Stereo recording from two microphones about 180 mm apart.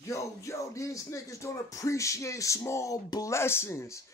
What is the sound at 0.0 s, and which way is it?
Speech, 15° left (ahead or behind).